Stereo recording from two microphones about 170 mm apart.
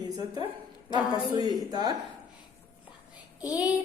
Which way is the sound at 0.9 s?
25° left (ahead or behind).